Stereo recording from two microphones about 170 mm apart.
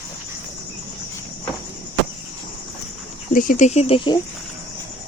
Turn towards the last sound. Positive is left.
turn(degrees=30)  # may be behind; listen again after turning